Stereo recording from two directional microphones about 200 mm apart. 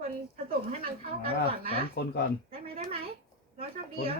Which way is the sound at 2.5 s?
30° right (ahead or behind).